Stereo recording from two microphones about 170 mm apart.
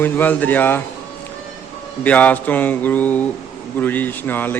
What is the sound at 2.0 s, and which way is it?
A man's voice, 10° left (ahead or behind).